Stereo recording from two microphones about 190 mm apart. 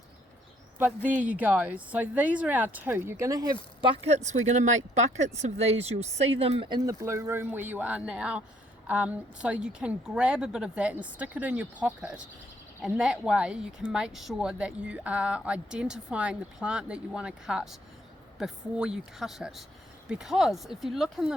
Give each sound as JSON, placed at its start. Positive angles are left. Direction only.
{"t": 0.8, "sound": "speech", "side_deg": -10}